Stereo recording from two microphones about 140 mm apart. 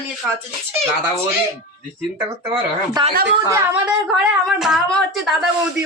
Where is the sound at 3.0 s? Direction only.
30° right (ahead or behind).